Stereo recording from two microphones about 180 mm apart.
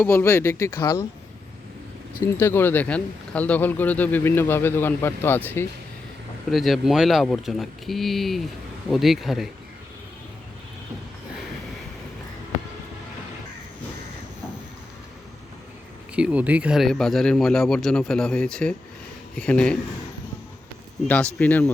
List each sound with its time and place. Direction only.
0.0 s speech: 15° left (ahead or behind)
2.4 s speech: 15° left (ahead or behind)
6.5 s speech: centre (ahead or behind)
16.1 s speech: 5° right (ahead or behind)
21.1 s speech: 5° left (ahead or behind)